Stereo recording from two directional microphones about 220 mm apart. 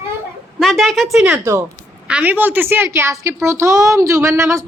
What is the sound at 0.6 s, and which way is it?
A woman's voice, centre (ahead or behind).